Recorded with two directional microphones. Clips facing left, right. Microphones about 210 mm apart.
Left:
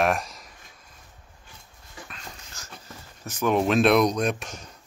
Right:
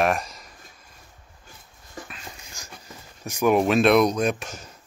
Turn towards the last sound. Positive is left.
turn(degrees=0)  # may be behind; listen again after turning